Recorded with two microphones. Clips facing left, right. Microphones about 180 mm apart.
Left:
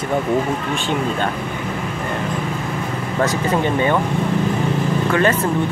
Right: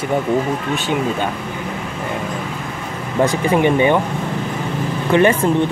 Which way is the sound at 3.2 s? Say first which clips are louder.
Right 4 dB; 15° right (ahead or behind).